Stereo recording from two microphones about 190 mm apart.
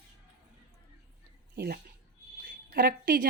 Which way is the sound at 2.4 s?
50° right (ahead or behind).